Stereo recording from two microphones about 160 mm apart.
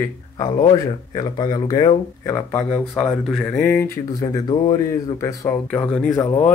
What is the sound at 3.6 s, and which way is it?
Speech, 15° left (ahead or behind).